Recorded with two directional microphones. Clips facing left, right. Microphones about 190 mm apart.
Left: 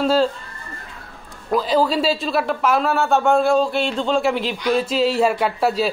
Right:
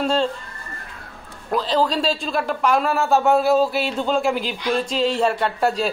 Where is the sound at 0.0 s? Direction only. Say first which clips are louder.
Left 3 dB; 5° left (ahead or behind).